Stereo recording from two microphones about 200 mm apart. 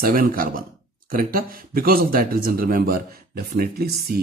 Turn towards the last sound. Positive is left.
turn(degrees=-50)  # may be behind; listen again after turning